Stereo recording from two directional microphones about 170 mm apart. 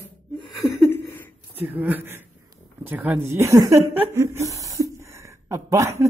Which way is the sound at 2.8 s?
10° right (ahead or behind).